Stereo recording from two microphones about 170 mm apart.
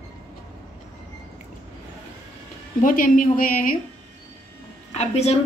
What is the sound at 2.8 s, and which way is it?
Speech, 55° left (ahead or behind).